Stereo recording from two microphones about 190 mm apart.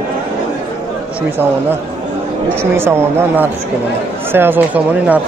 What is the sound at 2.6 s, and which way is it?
Speech, 10° right (ahead or behind).